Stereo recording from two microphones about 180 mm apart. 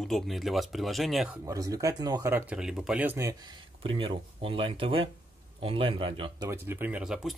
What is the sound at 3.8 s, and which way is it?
Speech, 30° right (ahead or behind).